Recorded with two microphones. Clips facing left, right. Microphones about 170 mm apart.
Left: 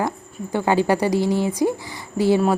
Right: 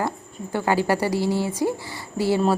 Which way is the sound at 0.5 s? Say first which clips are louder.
Left 3 dB; 20° left (ahead or behind).